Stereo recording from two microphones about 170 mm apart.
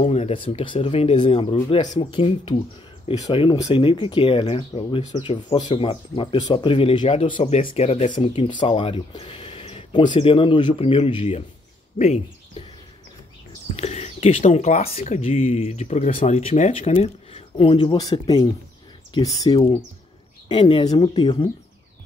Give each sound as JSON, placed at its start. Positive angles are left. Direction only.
{"t": 0.0, "sound": "speech", "side_deg": 35}
{"t": 8.2, "sound": "speech", "side_deg": 30}
{"t": 13.7, "sound": "speech", "side_deg": 40}